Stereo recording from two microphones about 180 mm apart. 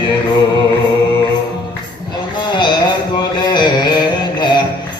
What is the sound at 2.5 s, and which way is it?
Music, 25° left (ahead or behind).